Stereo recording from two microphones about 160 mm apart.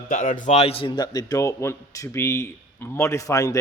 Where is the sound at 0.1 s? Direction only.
55° left (ahead or behind).